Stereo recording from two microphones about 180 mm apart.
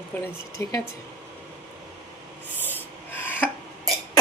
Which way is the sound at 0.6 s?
15° left (ahead or behind).